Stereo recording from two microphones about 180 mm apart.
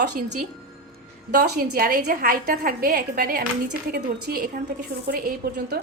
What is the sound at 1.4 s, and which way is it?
A woman's voice, 60° right (ahead or behind).